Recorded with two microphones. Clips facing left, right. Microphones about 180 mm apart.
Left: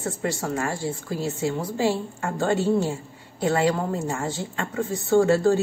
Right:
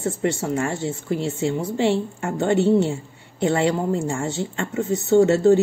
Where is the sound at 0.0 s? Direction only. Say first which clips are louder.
Right 4 dB; 25° right (ahead or behind).